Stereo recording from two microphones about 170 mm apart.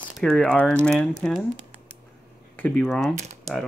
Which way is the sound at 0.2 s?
5° left (ahead or behind).